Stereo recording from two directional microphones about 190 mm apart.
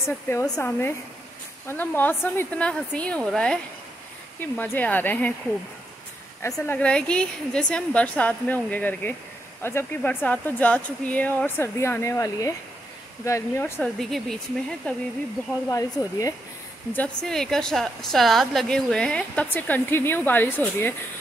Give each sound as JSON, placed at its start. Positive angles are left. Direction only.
{"t": 0.3, "sound": "speech", "side_deg": 10}
{"t": 4.7, "sound": "speech", "side_deg": 10}
{"t": 6.4, "sound": "speech", "side_deg": 10}
{"t": 13.7, "sound": "a woman's voice", "side_deg": 0}
{"t": 15.7, "sound": "a woman's voice", "side_deg": 15}